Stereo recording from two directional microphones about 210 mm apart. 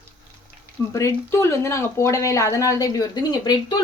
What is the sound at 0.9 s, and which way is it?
Speech, 15° left (ahead or behind).